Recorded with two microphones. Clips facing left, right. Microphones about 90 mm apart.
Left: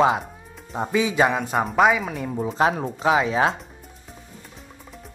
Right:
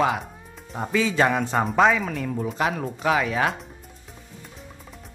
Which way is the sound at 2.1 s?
20° left (ahead or behind).